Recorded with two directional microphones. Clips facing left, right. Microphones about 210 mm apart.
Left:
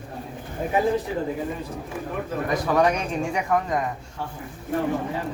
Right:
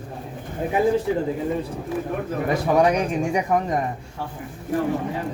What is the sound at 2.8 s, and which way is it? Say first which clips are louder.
Speech: right 2 dB; 15° right (ahead or behind).